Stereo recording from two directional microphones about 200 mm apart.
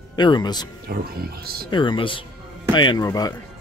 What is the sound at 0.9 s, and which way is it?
Speech, 45° right (ahead or behind).